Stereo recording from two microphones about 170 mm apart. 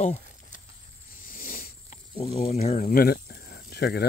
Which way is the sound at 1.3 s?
55° left (ahead or behind).